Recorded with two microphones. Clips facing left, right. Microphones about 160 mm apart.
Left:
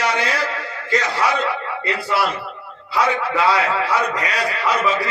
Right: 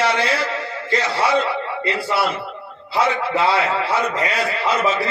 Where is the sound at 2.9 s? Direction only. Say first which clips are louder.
Even; 25° right (ahead or behind).